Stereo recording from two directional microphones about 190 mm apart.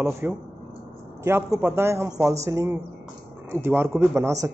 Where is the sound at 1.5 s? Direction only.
10° right (ahead or behind).